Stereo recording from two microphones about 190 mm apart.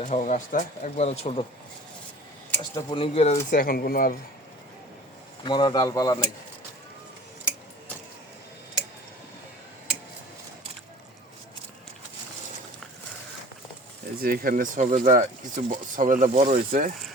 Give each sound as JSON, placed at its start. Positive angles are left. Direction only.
{"t": 0.0, "sound": "speech", "side_deg": 40}
{"t": 2.6, "sound": "speech", "side_deg": 25}
{"t": 3.5, "sound": "speech", "side_deg": 50}
{"t": 5.4, "sound": "speech", "side_deg": 25}
{"t": 14.2, "sound": "speech", "side_deg": -50}